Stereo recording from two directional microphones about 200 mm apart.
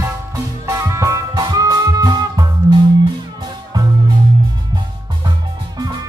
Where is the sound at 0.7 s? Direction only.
15° right (ahead or behind).